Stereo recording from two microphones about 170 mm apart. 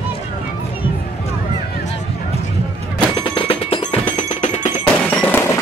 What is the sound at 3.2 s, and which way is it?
Music, 30° left (ahead or behind).